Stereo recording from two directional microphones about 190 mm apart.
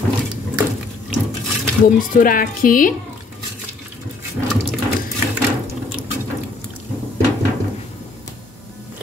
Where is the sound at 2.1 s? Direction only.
45° left (ahead or behind).